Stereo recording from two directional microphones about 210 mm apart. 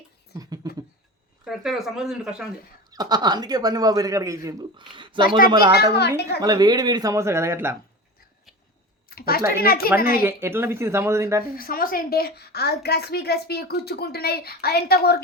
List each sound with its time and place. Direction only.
0.3 s speech: 15° right (ahead or behind)
1.5 s speech: centre (ahead or behind)
2.9 s speech: 20° right (ahead or behind)
5.9 s a woman's voice: 50° left (ahead or behind)
6.4 s speech: 20° right (ahead or behind)
9.0 s a sound: 45° left (ahead or behind)
9.6 s a woman's voice: 45° left (ahead or behind)
10.2 s speech: 10° right (ahead or behind)
11.5 s a woman's voice: 45° left (ahead or behind)